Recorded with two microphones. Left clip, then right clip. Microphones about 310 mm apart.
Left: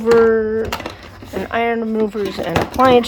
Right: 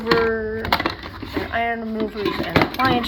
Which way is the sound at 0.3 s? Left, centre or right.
Left.